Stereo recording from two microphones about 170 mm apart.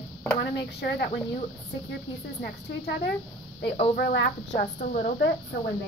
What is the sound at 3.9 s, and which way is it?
Speech, 70° left (ahead or behind).